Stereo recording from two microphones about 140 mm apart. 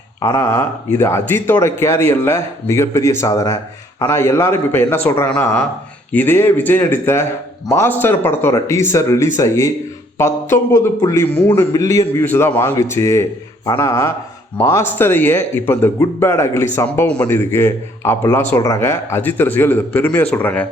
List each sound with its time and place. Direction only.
0.2 s a man's voice: 20° left (ahead or behind)